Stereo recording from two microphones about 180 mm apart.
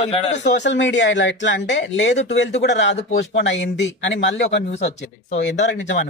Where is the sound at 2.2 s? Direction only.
80° left.